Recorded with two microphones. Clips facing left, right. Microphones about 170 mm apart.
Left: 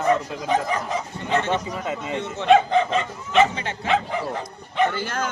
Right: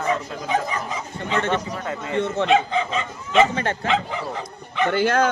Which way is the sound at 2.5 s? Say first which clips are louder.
Left 6 dB; 55° left (ahead or behind).